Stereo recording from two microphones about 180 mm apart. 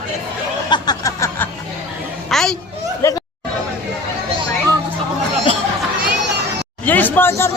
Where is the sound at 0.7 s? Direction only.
25° left (ahead or behind).